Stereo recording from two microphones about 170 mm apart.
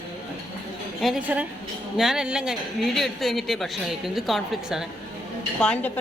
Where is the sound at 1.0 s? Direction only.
5° right (ahead or behind).